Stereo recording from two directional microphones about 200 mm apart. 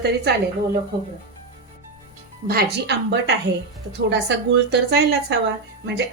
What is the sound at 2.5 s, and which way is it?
Speech, 50° right (ahead or behind).